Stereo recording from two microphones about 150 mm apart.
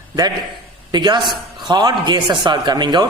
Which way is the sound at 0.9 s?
30° right (ahead or behind).